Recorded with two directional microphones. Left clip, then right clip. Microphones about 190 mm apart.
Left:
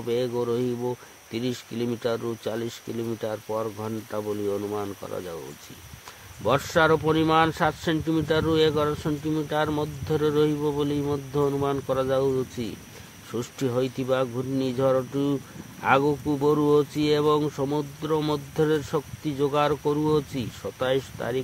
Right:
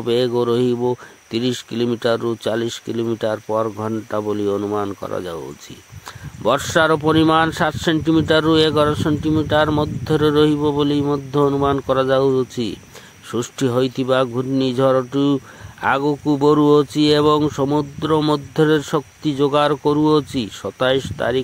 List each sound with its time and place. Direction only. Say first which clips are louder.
0.0 s speech: right 8 dB; 40° right (ahead or behind)
6.4 s speech: right 5 dB; 40° right (ahead or behind)